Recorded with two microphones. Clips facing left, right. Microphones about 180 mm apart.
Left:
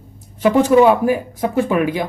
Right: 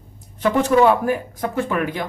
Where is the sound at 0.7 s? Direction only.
10° left (ahead or behind).